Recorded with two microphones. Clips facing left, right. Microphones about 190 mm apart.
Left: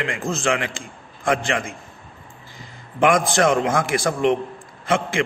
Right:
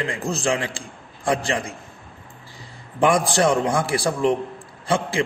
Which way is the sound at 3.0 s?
30° right (ahead or behind).